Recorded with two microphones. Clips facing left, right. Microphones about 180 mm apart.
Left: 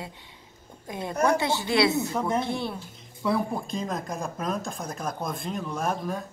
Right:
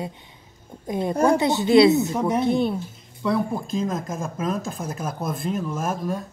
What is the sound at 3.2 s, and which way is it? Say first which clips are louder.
Speech: right 3 dB; centre (ahead or behind).